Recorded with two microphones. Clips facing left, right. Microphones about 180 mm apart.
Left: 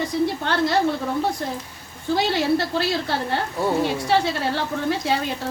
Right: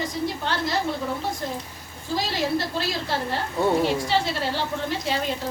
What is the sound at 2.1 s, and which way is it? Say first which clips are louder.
Speech: left 5 dB; 65° left (ahead or behind).